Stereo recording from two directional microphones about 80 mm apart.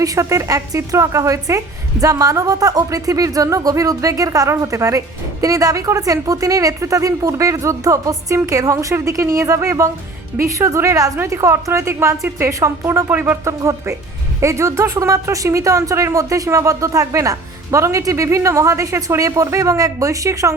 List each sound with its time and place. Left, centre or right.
0.0 s a woman's voice: right
13.6 s speech: right